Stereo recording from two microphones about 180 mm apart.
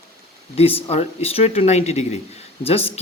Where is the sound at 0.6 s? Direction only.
35° left (ahead or behind).